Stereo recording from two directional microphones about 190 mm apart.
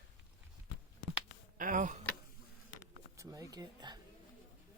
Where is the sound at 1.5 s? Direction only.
45° right (ahead or behind).